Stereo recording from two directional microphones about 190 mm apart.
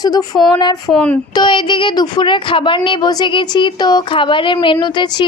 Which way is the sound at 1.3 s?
25° left (ahead or behind).